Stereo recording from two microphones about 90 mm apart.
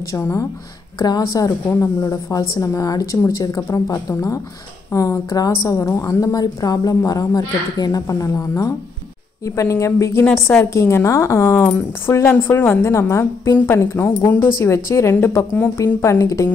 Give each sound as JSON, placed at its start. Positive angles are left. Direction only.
{"t": 0.1, "sound": "a woman's voice", "side_deg": 35}
{"t": 0.9, "sound": "a woman's voice", "side_deg": 45}
{"t": 1.7, "sound": "a woman's voice", "side_deg": 35}
{"t": 16.0, "sound": "a woman's voice", "side_deg": 35}